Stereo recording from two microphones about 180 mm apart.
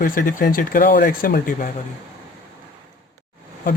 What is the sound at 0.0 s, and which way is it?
Speech, 50° left (ahead or behind).